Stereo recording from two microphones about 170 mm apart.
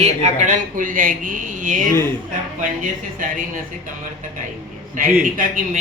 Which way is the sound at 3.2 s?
55° right (ahead or behind).